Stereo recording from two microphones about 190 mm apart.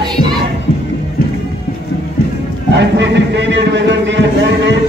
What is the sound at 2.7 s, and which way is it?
Speech, 65° right (ahead or behind).